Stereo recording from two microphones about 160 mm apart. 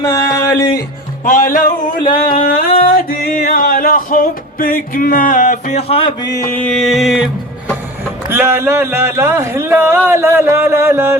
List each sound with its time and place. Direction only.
0.0 s music: 25° left (ahead or behind)
1.2 s music: 60° left (ahead or behind)
5.9 s mantra: 35° left (ahead or behind)
6.6 s music: 5° left (ahead or behind)
8.3 s speech: 15° right (ahead or behind)